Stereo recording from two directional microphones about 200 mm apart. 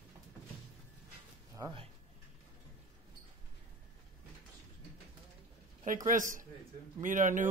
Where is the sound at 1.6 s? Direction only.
25° right (ahead or behind).